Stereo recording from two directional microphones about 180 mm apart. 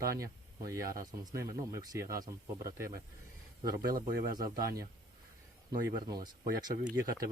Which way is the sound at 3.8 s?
55° right (ahead or behind).